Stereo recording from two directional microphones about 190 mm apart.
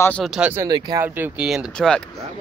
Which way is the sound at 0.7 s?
20° right (ahead or behind).